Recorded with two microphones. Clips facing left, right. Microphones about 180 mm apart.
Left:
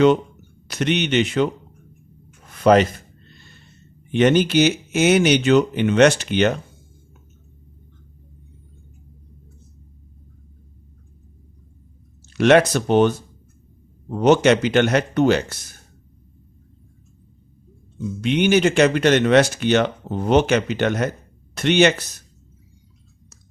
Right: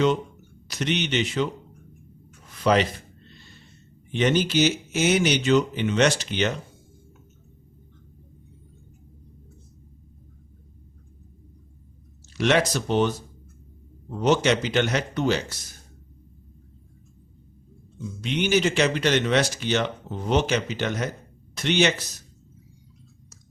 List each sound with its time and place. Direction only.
0.7 s speech: 60° left (ahead or behind)
2.5 s a sound: 55° left (ahead or behind)
4.1 s speech: 60° left (ahead or behind)
12.4 s speech: 60° left (ahead or behind)
18.2 s speech: 60° left (ahead or behind)